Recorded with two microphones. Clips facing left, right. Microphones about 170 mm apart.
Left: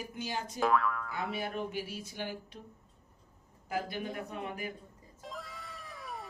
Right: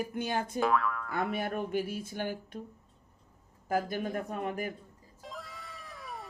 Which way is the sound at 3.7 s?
50° right (ahead or behind).